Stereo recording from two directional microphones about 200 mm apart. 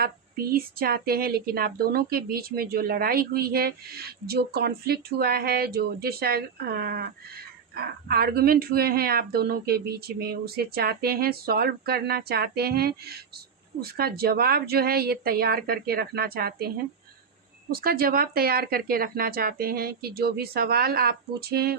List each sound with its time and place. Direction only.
0.0 s speech: 50° right (ahead or behind)